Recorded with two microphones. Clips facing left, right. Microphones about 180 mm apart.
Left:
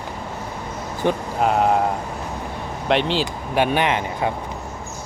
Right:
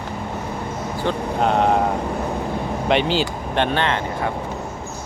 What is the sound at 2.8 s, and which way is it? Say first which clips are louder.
Speech: even; centre (ahead or behind).